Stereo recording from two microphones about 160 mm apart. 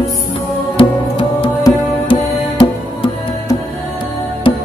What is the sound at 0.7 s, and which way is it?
Music, 35° left (ahead or behind).